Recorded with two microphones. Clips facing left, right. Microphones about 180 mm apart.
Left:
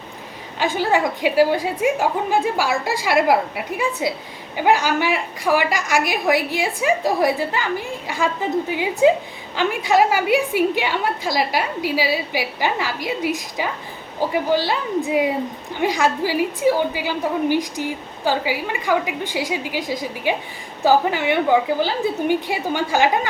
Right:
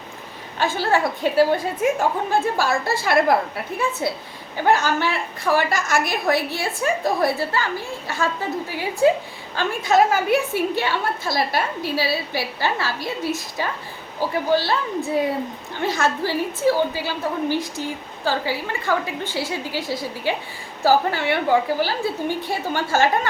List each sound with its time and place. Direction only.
0.6 s a woman's voice: 15° left (ahead or behind)